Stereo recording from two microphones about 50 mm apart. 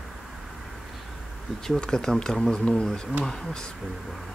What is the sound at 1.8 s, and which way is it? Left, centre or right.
Speech, centre.